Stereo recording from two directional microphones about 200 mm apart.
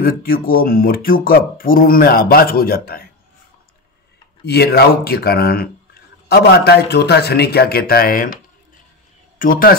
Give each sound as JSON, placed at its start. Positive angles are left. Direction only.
{"t": 0.0, "sound": "speech", "side_deg": 45}
{"t": 4.5, "sound": "speech", "side_deg": 55}
{"t": 9.4, "sound": "speech", "side_deg": 45}